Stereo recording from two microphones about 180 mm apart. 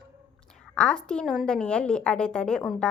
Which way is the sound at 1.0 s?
5° left (ahead or behind).